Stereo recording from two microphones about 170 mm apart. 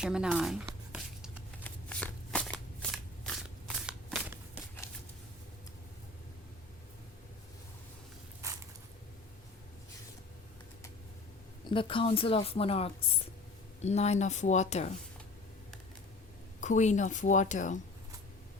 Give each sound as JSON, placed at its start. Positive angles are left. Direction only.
{"t": 0.0, "sound": "a sound", "side_deg": -5}
{"t": 1.6, "sound": "shuffling cards", "side_deg": 10}
{"t": 11.7, "sound": "a woman's voice", "side_deg": 30}
{"t": 16.6, "sound": "a woman's voice", "side_deg": 45}